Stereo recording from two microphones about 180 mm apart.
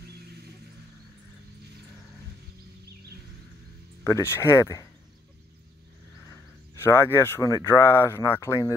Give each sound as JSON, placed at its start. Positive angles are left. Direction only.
{"t": 0.0, "sound": "a sound", "side_deg": -65}
{"t": 4.0, "sound": "speech", "side_deg": 15}
{"t": 6.7, "sound": "speech", "side_deg": 15}